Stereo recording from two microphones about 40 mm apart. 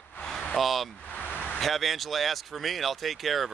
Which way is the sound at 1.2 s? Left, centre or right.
Left.